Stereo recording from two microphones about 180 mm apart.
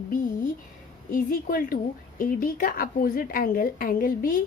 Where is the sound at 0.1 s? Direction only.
50° left (ahead or behind).